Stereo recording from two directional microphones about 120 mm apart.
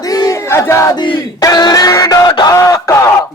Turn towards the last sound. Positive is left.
turn(degrees=25)  # may be behind; listen again after turning